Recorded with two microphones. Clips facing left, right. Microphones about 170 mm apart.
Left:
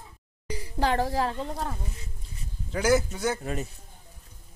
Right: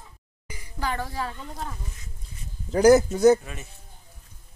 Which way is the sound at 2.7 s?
40° right (ahead or behind).